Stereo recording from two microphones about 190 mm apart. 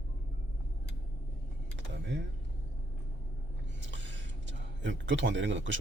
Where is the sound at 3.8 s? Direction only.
75° right (ahead or behind).